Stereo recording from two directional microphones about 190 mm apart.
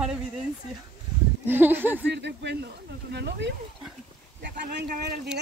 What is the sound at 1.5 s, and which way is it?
Speech, 10° right (ahead or behind).